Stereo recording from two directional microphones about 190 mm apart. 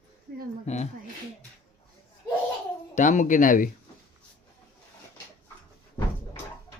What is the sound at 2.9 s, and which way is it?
Speech, 40° left (ahead or behind).